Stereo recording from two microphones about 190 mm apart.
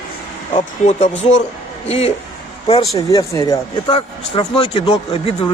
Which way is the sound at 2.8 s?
20° left (ahead or behind).